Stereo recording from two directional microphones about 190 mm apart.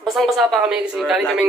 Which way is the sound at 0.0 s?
Centre (ahead or behind).